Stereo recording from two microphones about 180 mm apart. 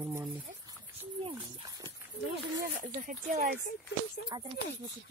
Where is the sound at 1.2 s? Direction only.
25° right (ahead or behind).